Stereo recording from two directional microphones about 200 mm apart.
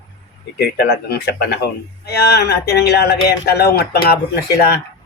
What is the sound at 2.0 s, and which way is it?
Livestock, 55° left (ahead or behind).